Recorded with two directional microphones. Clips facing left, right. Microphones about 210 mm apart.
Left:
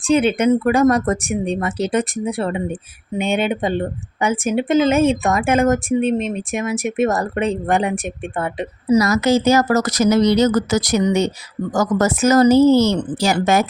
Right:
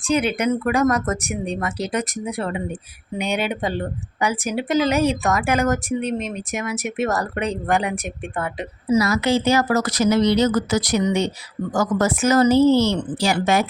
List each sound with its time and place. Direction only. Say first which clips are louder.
0.1 s a woman's voice: left 5 dB; 25° left (ahead or behind)
9.0 s speech: left 3 dB; 45° left (ahead or behind)